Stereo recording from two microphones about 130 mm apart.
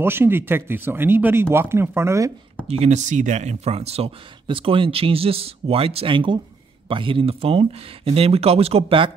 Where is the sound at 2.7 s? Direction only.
60° right (ahead or behind).